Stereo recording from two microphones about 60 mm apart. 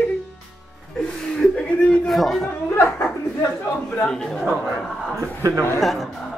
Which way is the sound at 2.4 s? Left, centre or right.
Left.